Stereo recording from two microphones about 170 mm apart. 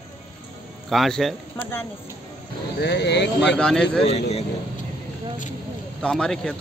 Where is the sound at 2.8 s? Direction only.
80° left.